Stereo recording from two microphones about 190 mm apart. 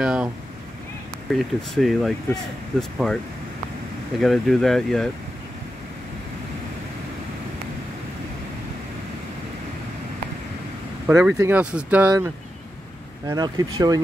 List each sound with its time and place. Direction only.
0.0 s speech: 5° right (ahead or behind)
1.3 s speech: centre (ahead or behind)
4.2 s speech: centre (ahead or behind)
11.1 s speech: 10° right (ahead or behind)
13.3 s speech: 20° right (ahead or behind)